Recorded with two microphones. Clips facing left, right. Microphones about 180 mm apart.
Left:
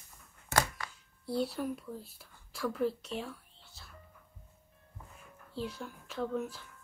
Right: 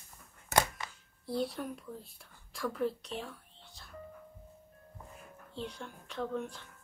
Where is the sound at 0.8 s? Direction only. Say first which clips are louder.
Even; 20° right (ahead or behind).